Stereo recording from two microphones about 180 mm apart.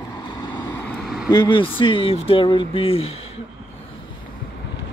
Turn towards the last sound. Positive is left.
turn(degrees=35)  # may be behind; listen again after turning